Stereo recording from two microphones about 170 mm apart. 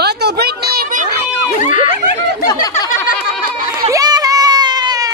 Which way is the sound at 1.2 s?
40° left (ahead or behind).